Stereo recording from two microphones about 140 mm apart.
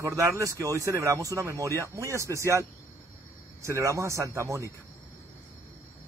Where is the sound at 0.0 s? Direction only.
20° right (ahead or behind).